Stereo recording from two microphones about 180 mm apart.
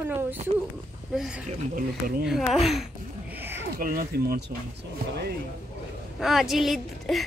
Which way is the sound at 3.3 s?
10° right (ahead or behind).